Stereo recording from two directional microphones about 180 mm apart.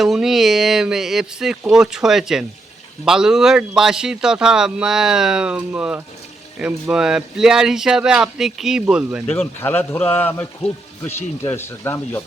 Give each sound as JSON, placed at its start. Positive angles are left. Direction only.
{"t": 0.0, "sound": "speech", "side_deg": 0}
{"t": 9.2, "sound": "speech", "side_deg": 10}